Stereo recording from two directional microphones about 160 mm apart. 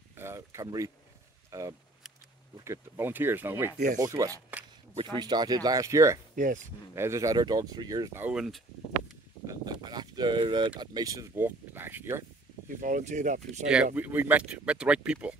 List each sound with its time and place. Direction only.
0.1 s a sound: 15° right (ahead or behind)
1.5 s speech: 20° right (ahead or behind)
6.3 s speech: 55° right (ahead or behind)
7.0 s speech: 20° right (ahead or behind); by 8.6 s centre (ahead or behind)
9.5 s a sound: 25° right (ahead or behind)
10.8 s speech: 25° right (ahead or behind)
12.6 s speech: 55° right (ahead or behind)
13.9 s speech: 10° right (ahead or behind)